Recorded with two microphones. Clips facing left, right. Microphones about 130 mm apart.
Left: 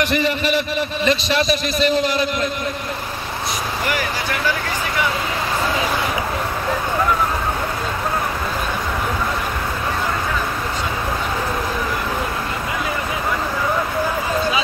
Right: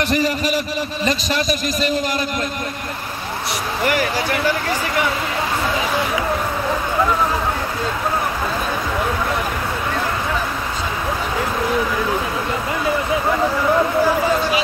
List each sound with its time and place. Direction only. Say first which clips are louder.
0.0 s a man's voice: even; 40° right (ahead or behind)